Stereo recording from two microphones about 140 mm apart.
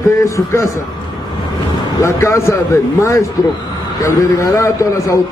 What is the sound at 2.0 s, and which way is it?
Speech, 20° left (ahead or behind).